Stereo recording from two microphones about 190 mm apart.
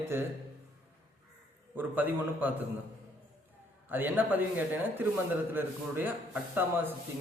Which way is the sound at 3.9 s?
10° right (ahead or behind).